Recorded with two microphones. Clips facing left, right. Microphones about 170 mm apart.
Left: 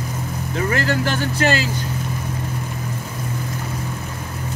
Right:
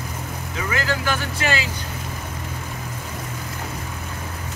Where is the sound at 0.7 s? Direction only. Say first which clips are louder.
Left 3 dB; 45° left (ahead or behind).